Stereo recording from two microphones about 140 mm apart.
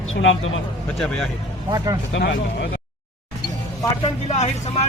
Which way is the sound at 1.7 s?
30° right (ahead or behind).